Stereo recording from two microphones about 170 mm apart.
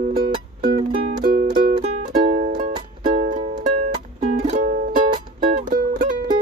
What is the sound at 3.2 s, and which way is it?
Music, 40° right (ahead or behind).